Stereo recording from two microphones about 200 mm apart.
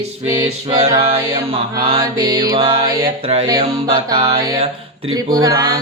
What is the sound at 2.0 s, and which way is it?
Music, 20° right (ahead or behind).